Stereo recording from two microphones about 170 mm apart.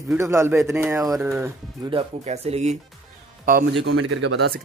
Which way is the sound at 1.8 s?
35° right (ahead or behind).